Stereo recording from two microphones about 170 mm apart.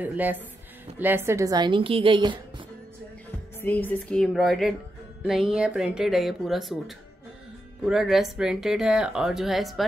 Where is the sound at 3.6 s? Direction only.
10° left (ahead or behind).